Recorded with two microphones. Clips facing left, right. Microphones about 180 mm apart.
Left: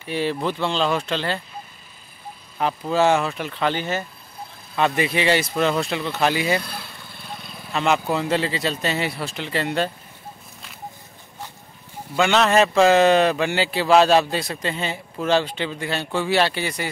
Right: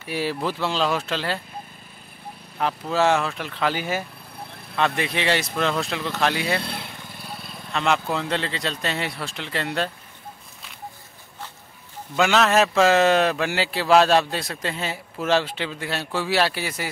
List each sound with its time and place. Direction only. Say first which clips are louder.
0.0 s speech: left 2 dB; 5° right (ahead or behind)
2.6 s speech: left 2 dB; centre (ahead or behind)
4.7 s speech: left 3 dB; 5° left (ahead or behind)
6.6 s speech: right 3 dB; 25° right (ahead or behind)
7.2 s speech: left 2 dB; 5° right (ahead or behind)
12.2 s speech: left 1 dB; centre (ahead or behind)